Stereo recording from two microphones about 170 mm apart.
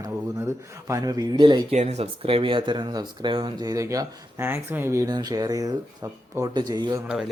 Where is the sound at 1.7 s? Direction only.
40° right (ahead or behind); by 7.0 s 25° right (ahead or behind).